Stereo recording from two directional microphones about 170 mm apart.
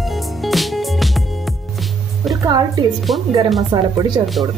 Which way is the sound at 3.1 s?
Centre (ahead or behind).